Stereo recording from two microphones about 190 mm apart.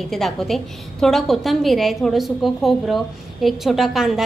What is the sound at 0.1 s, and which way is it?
A woman's voice, centre (ahead or behind).